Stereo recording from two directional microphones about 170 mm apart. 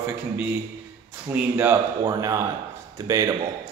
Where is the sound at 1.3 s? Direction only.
10° right (ahead or behind).